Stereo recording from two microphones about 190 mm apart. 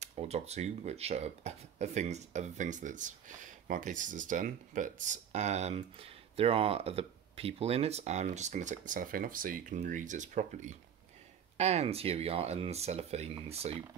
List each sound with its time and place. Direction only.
0.0 s speech: 35° right (ahead or behind)